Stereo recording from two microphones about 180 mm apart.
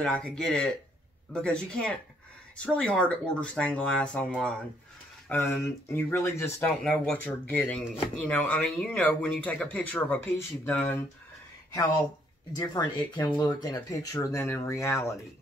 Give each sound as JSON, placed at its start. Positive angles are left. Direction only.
{"t": 0.0, "sound": "speech", "side_deg": 5}
{"t": 12.5, "sound": "speech", "side_deg": 20}